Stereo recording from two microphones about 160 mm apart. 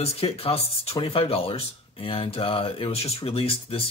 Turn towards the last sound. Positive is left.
turn(degrees=35)  # may be behind; listen again after turning